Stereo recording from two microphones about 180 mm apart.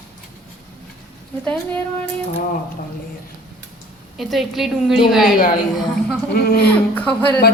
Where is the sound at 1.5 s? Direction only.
10° left (ahead or behind).